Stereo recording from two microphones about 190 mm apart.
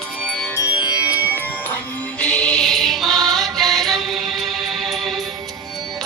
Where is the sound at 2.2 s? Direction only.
5° left (ahead or behind).